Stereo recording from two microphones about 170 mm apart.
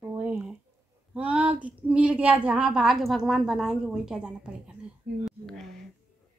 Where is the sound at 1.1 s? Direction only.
10° right (ahead or behind).